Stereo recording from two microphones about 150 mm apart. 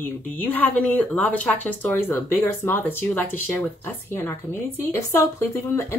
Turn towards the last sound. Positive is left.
turn(degrees=15)  # may be behind; listen again after turning